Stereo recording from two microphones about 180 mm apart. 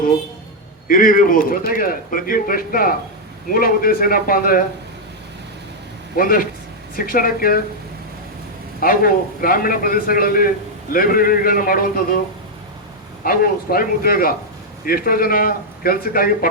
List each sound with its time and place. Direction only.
0.9 s speech: 50° left (ahead or behind)
6.1 s speech: 50° left (ahead or behind)
8.8 s speech: 55° left (ahead or behind)
13.2 s speech: 55° left (ahead or behind)